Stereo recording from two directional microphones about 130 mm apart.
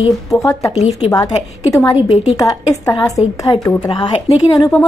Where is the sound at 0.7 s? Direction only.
55° left (ahead or behind).